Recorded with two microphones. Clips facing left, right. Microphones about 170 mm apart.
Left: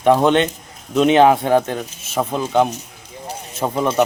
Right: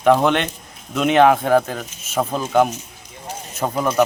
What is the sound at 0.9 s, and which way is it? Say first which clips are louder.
Speech: left 2 dB; 30° left (ahead or behind).